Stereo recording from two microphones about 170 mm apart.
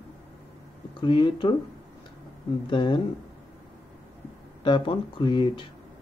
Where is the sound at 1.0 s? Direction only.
30° left (ahead or behind).